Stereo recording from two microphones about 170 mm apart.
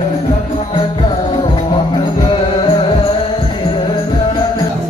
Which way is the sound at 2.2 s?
30° left (ahead or behind).